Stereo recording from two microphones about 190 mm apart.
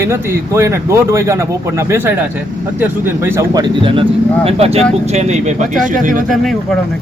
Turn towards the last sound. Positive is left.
turn(degrees=0)  # may be behind; listen again after turning